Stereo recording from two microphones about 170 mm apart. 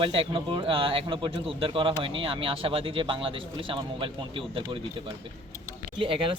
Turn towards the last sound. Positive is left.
turn(degrees=-30)  # may be behind; listen again after turning